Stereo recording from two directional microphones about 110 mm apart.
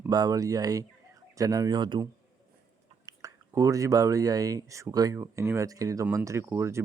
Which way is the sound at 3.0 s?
30° right (ahead or behind).